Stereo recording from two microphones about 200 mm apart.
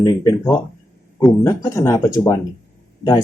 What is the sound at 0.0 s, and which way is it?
Speech, 15° left (ahead or behind).